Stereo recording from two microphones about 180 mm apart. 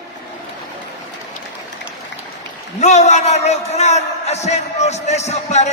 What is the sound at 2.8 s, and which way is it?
A man's voice, 40° left (ahead or behind).